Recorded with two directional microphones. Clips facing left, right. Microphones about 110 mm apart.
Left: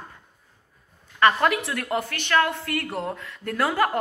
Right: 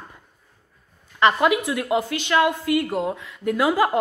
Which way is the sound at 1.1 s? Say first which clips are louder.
Right 2 dB; 15° right (ahead or behind).